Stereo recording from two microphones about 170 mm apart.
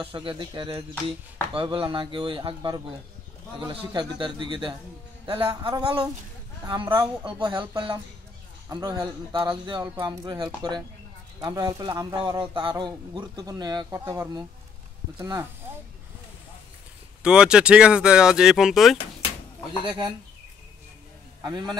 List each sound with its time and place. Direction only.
0.0 s a man's voice: 30° right (ahead or behind)
12.2 s a man's voice: 30° right (ahead or behind)
17.2 s speech: 5° right (ahead or behind)
21.4 s a man's voice: 25° right (ahead or behind)